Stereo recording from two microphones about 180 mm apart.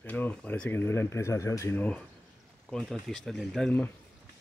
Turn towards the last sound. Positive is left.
turn(degrees=5)  # may be behind; listen again after turning